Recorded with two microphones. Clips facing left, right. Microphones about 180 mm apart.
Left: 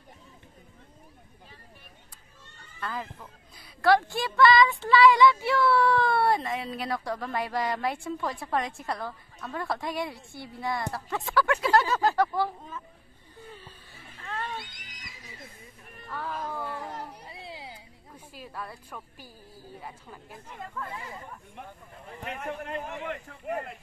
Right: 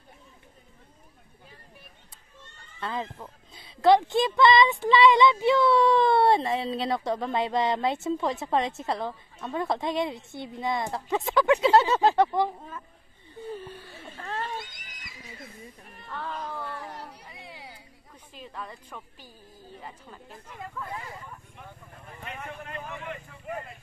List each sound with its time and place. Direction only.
2.8 s a woman's voice: 25° right (ahead or behind)
14.2 s neigh: 40° right (ahead or behind)
16.1 s speech: 5° left (ahead or behind)
16.8 s a sound: 30° left (ahead or behind)
18.1 s a woman's voice: 5° left (ahead or behind)
22.4 s speech: 45° left (ahead or behind)
23.0 s speech: 60° left (ahead or behind)